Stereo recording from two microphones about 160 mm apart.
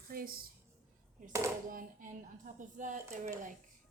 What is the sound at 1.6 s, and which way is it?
Speech, 60° right (ahead or behind).